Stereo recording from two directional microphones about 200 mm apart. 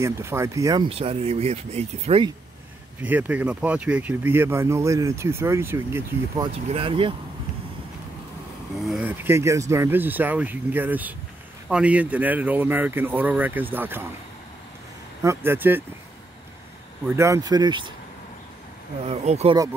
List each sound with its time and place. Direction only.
0.0 s speech: 15° right (ahead or behind)
0.8 s speech: 30° right (ahead or behind)
3.0 s speech: 5° right (ahead or behind)
6.5 s speech: 30° right (ahead or behind)
8.8 s speech: 5° right (ahead or behind)
15.2 s speech: 10° right (ahead or behind)
17.1 s speech: 15° right (ahead or behind)
19.0 s speech: 30° right (ahead or behind)